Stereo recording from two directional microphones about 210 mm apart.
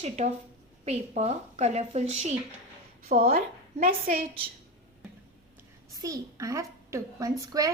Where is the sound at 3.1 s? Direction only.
45° right (ahead or behind).